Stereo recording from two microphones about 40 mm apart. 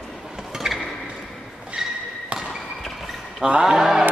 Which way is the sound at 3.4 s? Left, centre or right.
Right.